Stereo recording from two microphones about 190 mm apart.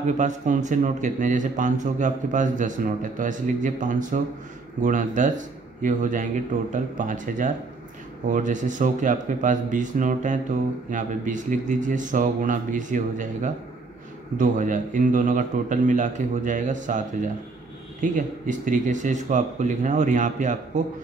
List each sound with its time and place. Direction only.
0.0 s a man's voice: 40° right (ahead or behind)
18.0 s a man's voice: 40° right (ahead or behind)